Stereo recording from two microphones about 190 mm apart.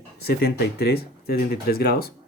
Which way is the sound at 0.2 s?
55° left (ahead or behind).